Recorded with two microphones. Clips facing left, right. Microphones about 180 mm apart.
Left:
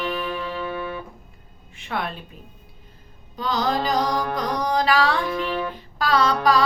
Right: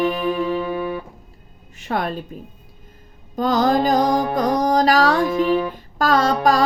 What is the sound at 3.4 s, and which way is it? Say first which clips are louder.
Music: right 7 dB; 45° right (ahead or behind).